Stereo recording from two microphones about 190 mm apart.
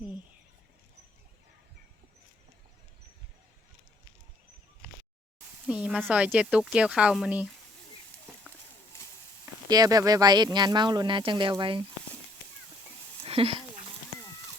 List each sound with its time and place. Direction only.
5.6 s speech: 5° right (ahead or behind)
9.6 s speech: 20° right (ahead or behind)
13.2 s a sound: 30° right (ahead or behind)